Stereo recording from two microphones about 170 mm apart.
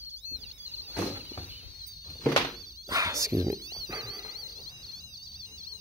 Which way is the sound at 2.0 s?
20° left (ahead or behind).